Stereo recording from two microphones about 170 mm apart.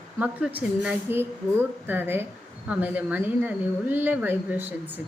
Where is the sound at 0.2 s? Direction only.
10° right (ahead or behind).